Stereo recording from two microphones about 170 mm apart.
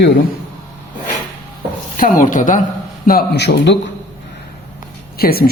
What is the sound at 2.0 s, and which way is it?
Speech, 50° left (ahead or behind).